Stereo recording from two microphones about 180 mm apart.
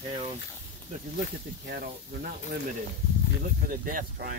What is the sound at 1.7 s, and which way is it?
Speech, 60° right (ahead or behind).